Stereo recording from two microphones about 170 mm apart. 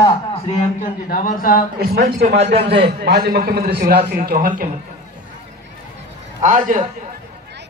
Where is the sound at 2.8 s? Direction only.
75° right (ahead or behind); by 4.7 s 55° right (ahead or behind).